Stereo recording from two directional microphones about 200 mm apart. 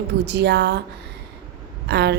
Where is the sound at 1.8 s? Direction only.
55° right (ahead or behind).